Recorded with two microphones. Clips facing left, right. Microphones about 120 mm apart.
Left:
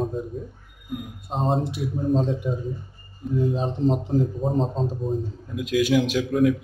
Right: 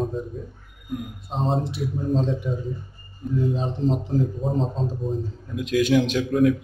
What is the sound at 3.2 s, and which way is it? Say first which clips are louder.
Speech: even; centre (ahead or behind).